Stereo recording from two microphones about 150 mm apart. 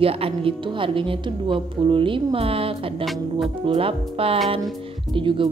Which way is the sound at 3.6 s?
40° right (ahead or behind).